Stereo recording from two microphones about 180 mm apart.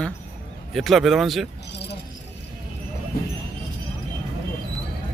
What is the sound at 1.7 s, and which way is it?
Keys jangling, 70° left (ahead or behind).